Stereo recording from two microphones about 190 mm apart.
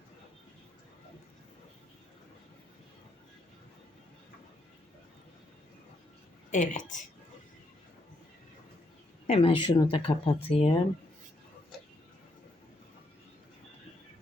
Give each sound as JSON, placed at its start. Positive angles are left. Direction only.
{"t": 6.5, "sound": "a woman's voice", "side_deg": 40}
{"t": 9.2, "sound": "speech", "side_deg": 30}